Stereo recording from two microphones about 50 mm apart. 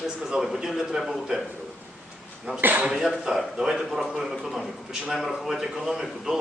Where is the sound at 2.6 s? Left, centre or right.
Right.